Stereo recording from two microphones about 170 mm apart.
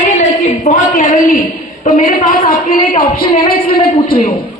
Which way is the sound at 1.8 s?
50° left (ahead or behind).